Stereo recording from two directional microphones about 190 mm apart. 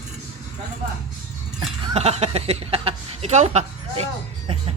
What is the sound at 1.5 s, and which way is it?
Speech, 30° right (ahead or behind).